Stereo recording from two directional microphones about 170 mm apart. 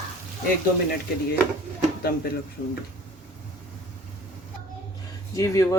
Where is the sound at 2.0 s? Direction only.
70° left (ahead or behind).